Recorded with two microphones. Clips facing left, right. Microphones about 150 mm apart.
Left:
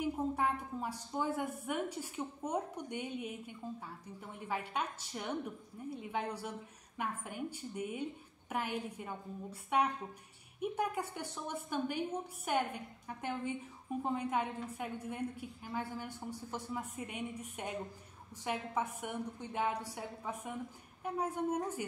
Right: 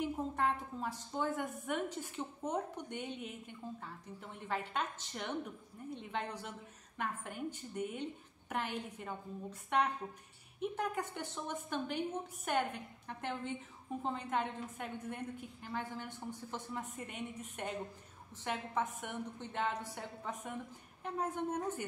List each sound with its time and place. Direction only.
0.0 s a woman's voice: 10° left (ahead or behind)